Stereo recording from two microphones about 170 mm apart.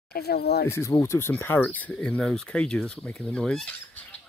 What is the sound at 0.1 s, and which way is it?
Speech, 70° left (ahead or behind).